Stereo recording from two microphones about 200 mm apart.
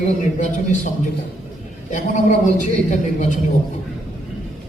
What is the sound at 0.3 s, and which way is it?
A woman's voice, 40° left (ahead or behind).